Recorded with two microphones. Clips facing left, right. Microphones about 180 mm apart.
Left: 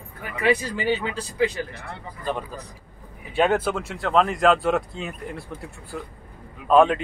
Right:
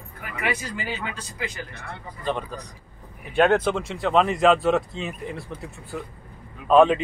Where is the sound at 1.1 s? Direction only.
30° left (ahead or behind).